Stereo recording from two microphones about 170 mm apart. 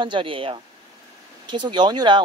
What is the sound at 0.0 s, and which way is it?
Speech, 30° right (ahead or behind).